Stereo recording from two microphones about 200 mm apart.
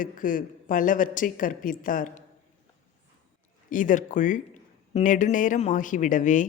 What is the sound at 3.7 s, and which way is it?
A woman's voice, 40° left (ahead or behind).